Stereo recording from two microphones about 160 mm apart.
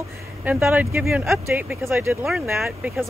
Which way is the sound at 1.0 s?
Centre (ahead or behind).